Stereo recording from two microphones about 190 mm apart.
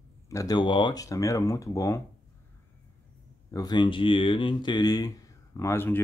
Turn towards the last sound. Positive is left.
turn(degrees=15)  # may be behind; listen again after turning